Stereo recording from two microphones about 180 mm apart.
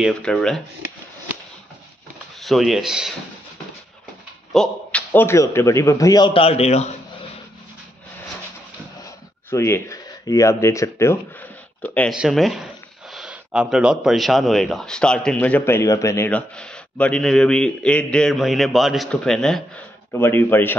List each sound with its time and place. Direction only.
0.0 s speech: 5° left (ahead or behind)
2.4 s speech: centre (ahead or behind)
4.6 s a man's voice: 10° left (ahead or behind); by 7.0 s 35° left (ahead or behind)
9.5 s a man's voice: 15° left (ahead or behind)
12.1 s a man's voice: centre (ahead or behind)